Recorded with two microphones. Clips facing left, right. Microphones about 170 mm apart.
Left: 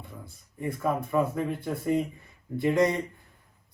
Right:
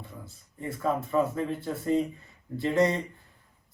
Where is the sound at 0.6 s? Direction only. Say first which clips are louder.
Left 1 dB; 15° left (ahead or behind).